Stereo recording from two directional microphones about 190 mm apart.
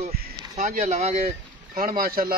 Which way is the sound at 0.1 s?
40° right (ahead or behind).